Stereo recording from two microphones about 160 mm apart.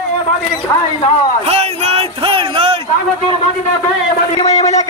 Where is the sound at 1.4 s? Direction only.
40° right (ahead or behind).